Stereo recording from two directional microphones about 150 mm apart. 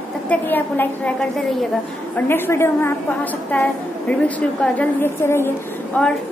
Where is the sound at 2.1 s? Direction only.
15° left (ahead or behind).